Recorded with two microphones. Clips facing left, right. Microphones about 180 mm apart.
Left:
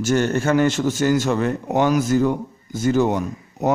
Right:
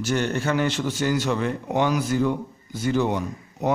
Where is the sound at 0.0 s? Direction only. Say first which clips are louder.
Left 5 dB; 45° left (ahead or behind).